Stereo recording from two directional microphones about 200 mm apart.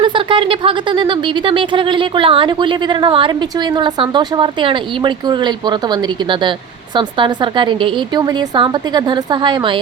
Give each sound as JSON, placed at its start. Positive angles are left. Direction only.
{"t": 0.0, "sound": "speech", "side_deg": -25}